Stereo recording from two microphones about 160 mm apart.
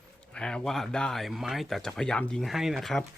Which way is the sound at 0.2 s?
5° left (ahead or behind).